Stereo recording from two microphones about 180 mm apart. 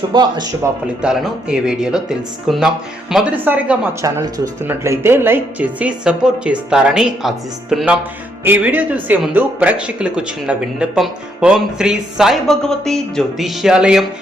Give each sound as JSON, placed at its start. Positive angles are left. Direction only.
{"t": 0.1, "sound": "speech", "side_deg": -25}
{"t": 1.0, "sound": "speech", "side_deg": -5}